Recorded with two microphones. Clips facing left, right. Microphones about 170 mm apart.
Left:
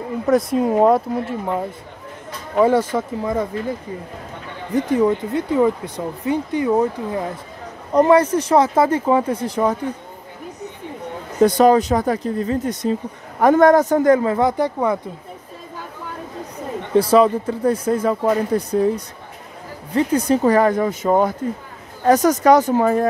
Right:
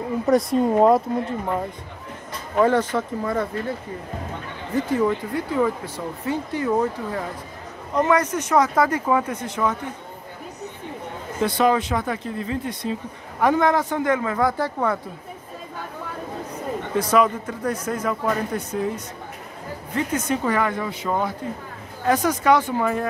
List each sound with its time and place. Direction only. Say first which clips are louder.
0.3 s speech: left 2 dB; centre (ahead or behind)
2.5 s speech: left 3 dB; 10° left (ahead or behind)
4.7 s speech: left 4 dB; 20° left (ahead or behind)
7.9 s speech: left 7 dB; 35° left (ahead or behind)
11.4 s speech: left 7 dB; 40° left (ahead or behind); by 15.0 s 15° left (ahead or behind)
16.9 s speech: left 6 dB; 30° left (ahead or behind)